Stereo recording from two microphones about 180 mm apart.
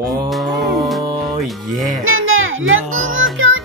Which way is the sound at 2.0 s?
90° right.